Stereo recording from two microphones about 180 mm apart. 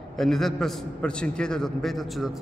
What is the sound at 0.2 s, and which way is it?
A man's voice, centre (ahead or behind).